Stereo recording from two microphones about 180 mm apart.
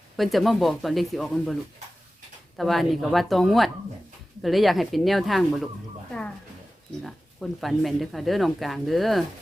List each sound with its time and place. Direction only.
0.2 s speech: centre (ahead or behind)
2.6 s speech: centre (ahead or behind)
7.0 s speech: centre (ahead or behind)